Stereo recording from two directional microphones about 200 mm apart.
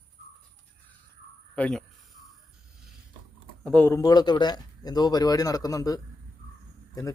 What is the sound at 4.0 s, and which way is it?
Speech, 20° left (ahead or behind).